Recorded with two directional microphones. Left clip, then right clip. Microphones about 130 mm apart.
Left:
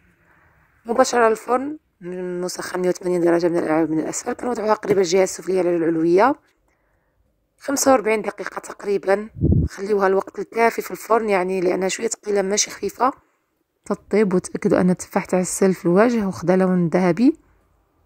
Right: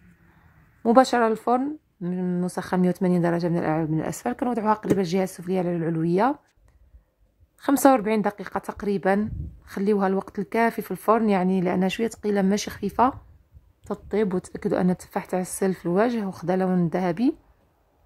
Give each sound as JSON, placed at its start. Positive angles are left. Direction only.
{"t": 1.0, "sound": "speech", "side_deg": 35}
{"t": 1.6, "sound": "speech", "side_deg": 15}
{"t": 2.4, "sound": "speech", "side_deg": 40}
{"t": 7.8, "sound": "speech", "side_deg": 35}